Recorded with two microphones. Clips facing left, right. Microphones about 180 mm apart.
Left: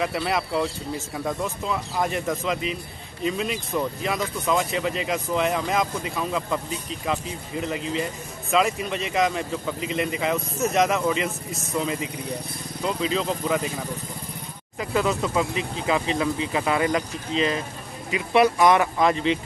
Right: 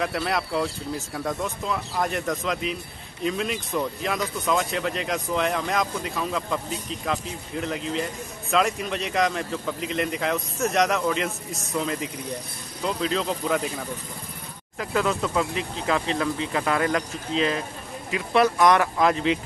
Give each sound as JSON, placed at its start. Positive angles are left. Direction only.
{"t": 0.0, "sound": "speech", "side_deg": 0}
{"t": 14.8, "sound": "speech", "side_deg": 0}